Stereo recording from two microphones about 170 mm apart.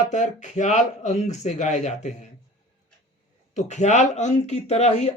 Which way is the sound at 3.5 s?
45° left (ahead or behind).